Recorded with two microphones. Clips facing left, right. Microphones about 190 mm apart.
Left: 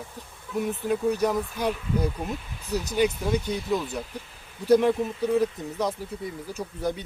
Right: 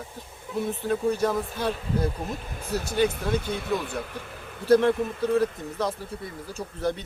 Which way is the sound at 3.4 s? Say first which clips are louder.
Left 1 dB; 60° right (ahead or behind).